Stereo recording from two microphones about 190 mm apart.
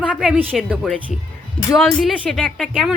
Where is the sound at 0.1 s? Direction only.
5° right (ahead or behind).